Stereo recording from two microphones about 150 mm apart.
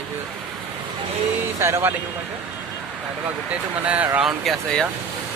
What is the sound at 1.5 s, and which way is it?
Speech, 20° right (ahead or behind).